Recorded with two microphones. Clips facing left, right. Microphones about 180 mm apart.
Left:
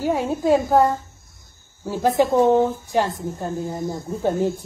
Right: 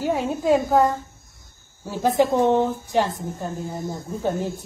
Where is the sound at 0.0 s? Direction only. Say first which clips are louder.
Left 2 dB; 10° left (ahead or behind).